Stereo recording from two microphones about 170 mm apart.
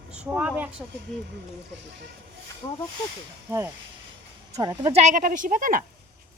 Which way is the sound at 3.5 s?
15° right (ahead or behind).